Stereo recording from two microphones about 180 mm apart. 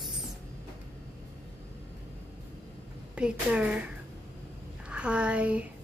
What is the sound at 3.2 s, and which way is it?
Speech, 5° right (ahead or behind).